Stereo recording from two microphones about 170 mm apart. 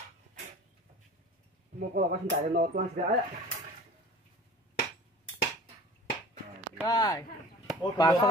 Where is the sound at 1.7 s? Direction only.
60° right (ahead or behind).